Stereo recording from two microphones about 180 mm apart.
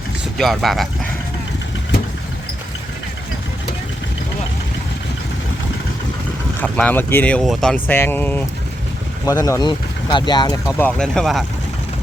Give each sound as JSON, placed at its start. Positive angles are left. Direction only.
{"t": 0.3, "sound": "speech", "side_deg": 0}
{"t": 6.6, "sound": "speech", "side_deg": 10}